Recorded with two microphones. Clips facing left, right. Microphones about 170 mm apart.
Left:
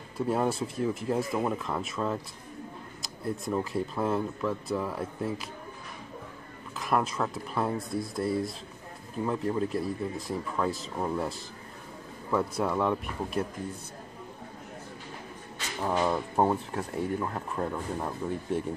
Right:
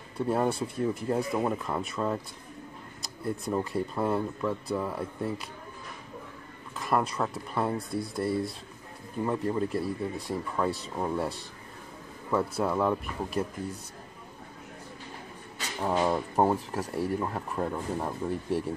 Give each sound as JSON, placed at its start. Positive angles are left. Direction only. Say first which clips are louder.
{"t": 0.2, "sound": "speech", "louder": "right 1 dB", "side_deg": 0}
{"t": 6.8, "sound": "speech", "louder": "even", "side_deg": 0}
{"t": 15.8, "sound": "speech", "louder": "right 1 dB", "side_deg": -10}